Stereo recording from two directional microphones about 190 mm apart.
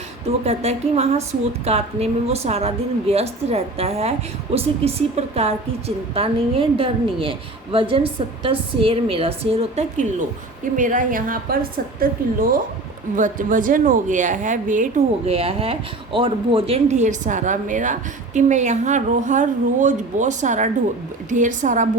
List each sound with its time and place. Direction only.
0.3 s a woman's voice: 35° right (ahead or behind)